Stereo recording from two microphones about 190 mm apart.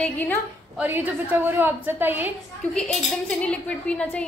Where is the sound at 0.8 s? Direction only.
10° right (ahead or behind).